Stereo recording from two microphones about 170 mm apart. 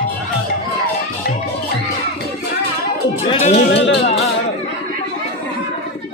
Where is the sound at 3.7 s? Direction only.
85° left.